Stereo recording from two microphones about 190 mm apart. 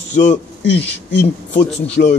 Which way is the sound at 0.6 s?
65° left (ahead or behind).